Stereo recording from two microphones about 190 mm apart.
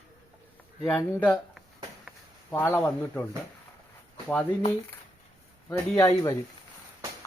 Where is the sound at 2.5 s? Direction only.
10° left (ahead or behind).